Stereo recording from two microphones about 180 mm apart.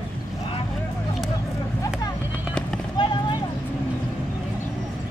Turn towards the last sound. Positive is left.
turn(degrees=25)  # may be behind; listen again after turning